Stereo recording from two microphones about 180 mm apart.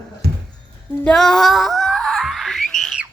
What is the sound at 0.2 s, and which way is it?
Music, 65° right (ahead or behind).